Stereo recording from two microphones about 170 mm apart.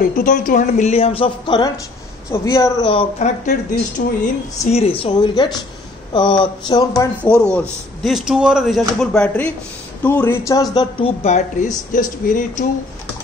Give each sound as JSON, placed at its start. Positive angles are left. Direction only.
{"t": 0.0, "sound": "a woman's voice", "side_deg": 50}
{"t": 2.3, "sound": "speech", "side_deg": 15}
{"t": 2.9, "sound": "speech", "side_deg": 35}
{"t": 4.0, "sound": "speech", "side_deg": 65}
{"t": 4.6, "sound": "speech", "side_deg": 35}
{"t": 7.2, "sound": "a woman's voice", "side_deg": 5}